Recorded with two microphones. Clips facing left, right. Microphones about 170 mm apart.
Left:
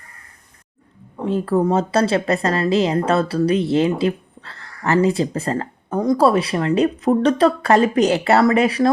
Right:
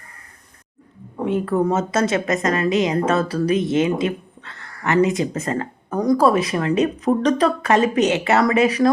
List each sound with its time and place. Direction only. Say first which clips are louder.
1.2 s speech: left 1 dB; 30° left (ahead or behind)